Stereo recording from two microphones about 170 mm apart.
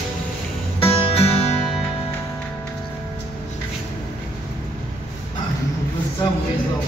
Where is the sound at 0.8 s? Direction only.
35° left (ahead or behind).